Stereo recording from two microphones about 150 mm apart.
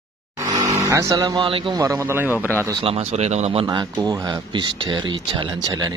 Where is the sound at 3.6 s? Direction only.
25° right (ahead or behind).